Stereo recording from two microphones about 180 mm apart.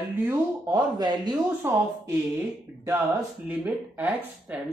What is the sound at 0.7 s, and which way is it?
Speech, 20° right (ahead or behind).